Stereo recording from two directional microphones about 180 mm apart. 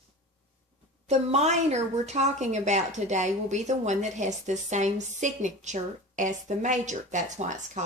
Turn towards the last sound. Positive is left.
turn(degrees=-45)  # may be behind; listen again after turning